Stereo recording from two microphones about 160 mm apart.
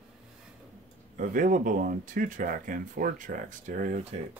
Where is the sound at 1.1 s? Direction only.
55° right (ahead or behind).